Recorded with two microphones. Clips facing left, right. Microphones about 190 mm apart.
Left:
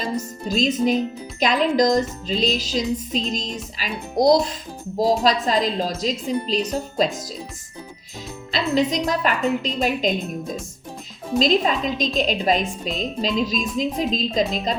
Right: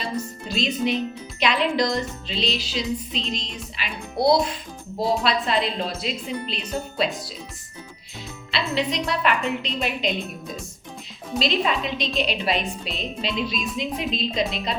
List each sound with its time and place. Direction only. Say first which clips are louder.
0.0 s a woman's voice: left 3 dB; 40° left (ahead or behind)
8.5 s a woman's voice: left 4 dB; 40° left (ahead or behind)